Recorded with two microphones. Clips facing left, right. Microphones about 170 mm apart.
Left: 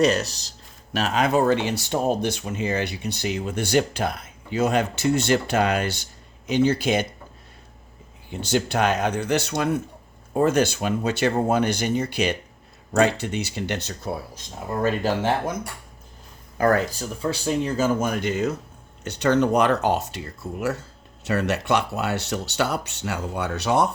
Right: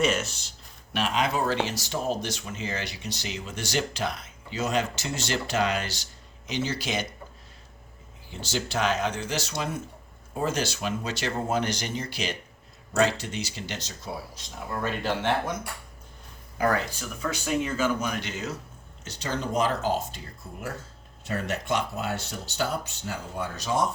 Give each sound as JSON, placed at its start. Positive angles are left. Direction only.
{"t": 0.0, "sound": "speech", "side_deg": 35}
{"t": 8.3, "sound": "speech", "side_deg": 60}
{"t": 16.6, "sound": "speech", "side_deg": 50}
{"t": 17.0, "sound": "speech", "side_deg": 30}
{"t": 19.0, "sound": "speech", "side_deg": 65}